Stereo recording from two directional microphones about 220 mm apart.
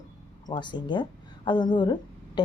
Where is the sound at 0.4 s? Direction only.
20° left (ahead or behind).